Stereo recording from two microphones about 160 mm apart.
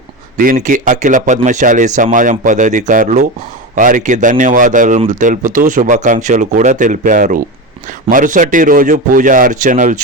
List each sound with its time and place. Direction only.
0.3 s a man's voice: 55° right (ahead or behind)